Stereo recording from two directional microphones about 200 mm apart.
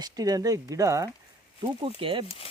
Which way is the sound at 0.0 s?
20° right (ahead or behind).